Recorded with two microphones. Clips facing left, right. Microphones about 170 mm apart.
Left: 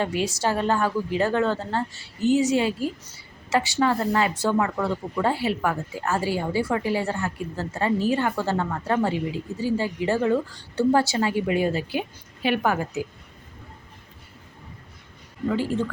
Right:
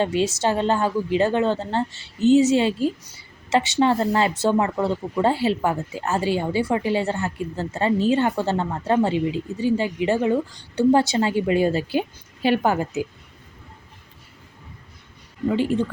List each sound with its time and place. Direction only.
0.0 s speech: 25° right (ahead or behind)
15.4 s speech: 20° right (ahead or behind)